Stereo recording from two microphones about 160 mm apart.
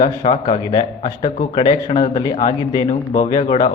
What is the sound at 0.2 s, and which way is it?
Speech, 35° left (ahead or behind).